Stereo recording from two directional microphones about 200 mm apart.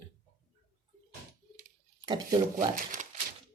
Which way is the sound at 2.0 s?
20° right (ahead or behind).